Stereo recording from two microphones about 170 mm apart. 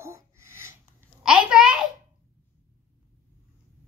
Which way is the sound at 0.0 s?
15° right (ahead or behind).